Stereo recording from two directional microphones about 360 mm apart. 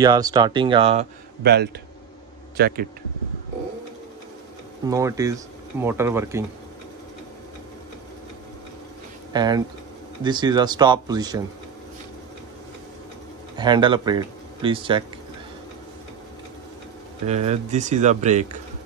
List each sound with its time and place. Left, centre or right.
0.0 s speech: centre
1.4 s speech: right
4.8 s speech: centre
9.3 s speech: centre
13.6 s speech: centre
17.3 s speech: centre